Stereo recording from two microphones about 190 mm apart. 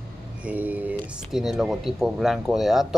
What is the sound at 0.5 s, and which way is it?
Speech, 10° right (ahead or behind).